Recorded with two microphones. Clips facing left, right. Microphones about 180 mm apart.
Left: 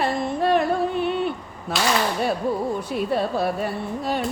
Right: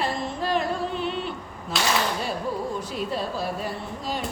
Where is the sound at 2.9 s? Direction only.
60° left (ahead or behind).